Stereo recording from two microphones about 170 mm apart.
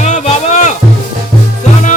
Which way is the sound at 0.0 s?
45° left (ahead or behind).